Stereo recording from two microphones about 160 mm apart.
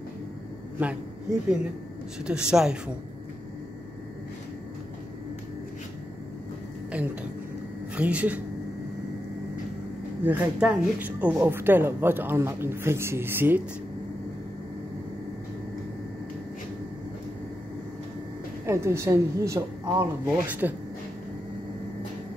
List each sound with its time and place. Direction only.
0.7 s a woman's voice: 10° right (ahead or behind)
7.9 s speech: 10° right (ahead or behind)
10.2 s speech: 10° right (ahead or behind)
18.7 s speech: 15° right (ahead or behind)